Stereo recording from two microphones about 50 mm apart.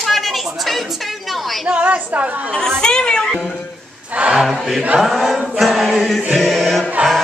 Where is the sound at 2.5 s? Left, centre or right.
Centre.